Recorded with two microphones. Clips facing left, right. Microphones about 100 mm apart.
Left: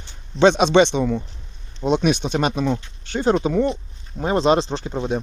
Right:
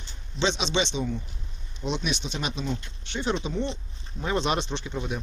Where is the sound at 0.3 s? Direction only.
55° left (ahead or behind).